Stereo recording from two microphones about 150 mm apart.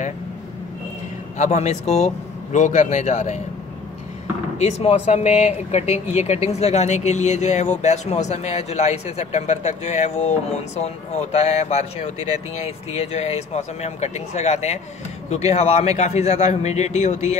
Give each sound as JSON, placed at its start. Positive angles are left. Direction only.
{"t": 1.4, "sound": "speech", "side_deg": 50}
{"t": 4.6, "sound": "speech", "side_deg": 45}